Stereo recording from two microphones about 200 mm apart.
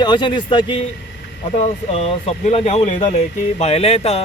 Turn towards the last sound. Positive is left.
turn(degrees=30)  # may be behind; listen again after turning